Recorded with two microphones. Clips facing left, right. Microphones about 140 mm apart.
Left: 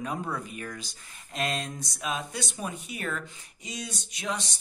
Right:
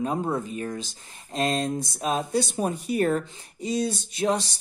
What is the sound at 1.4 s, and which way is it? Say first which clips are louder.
Speech: right 6 dB; 40° right (ahead or behind).